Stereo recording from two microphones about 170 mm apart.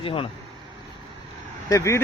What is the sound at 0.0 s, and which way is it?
Speech, 35° left (ahead or behind).